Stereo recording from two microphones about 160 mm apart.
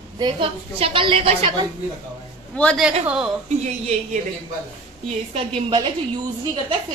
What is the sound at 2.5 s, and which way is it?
Speech, 5° left (ahead or behind).